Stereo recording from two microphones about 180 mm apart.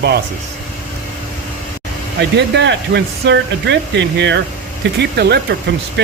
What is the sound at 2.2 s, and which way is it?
Speech, 70° right (ahead or behind).